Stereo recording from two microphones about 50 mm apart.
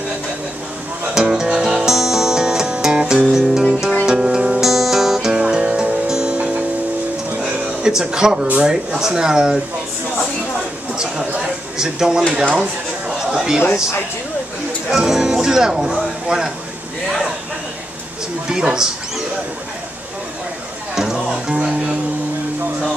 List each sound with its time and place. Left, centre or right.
1.3 s music: centre
3.3 s speech: centre
4.0 s music: centre
5.3 s music: centre
6.3 s music: right
7.3 s music: centre
8.5 s speech: centre
11.0 s a sound: centre
13.2 s speech: centre
14.9 s speech: centre
18.5 s speech: centre
20.9 s music: centre